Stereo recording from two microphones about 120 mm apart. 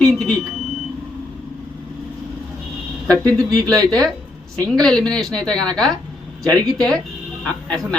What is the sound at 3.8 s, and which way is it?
Speech, 5° left (ahead or behind).